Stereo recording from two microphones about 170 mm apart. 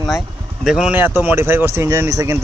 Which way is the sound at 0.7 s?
5° right (ahead or behind).